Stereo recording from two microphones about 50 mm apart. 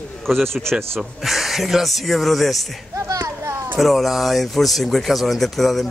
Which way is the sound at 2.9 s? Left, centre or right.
Right.